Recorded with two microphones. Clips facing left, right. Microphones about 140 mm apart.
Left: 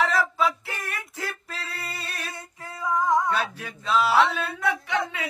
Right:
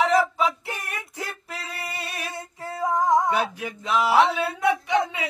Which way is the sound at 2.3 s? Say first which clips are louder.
Right 6 dB; 35° right (ahead or behind).